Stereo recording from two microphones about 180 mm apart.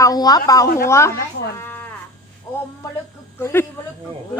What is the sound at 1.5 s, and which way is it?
Livestock, 10° left (ahead or behind).